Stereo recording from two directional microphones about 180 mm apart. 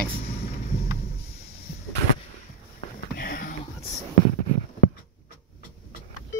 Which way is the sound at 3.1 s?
55° left (ahead or behind).